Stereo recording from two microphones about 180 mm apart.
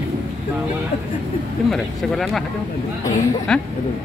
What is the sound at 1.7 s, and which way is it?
Speech, centre (ahead or behind).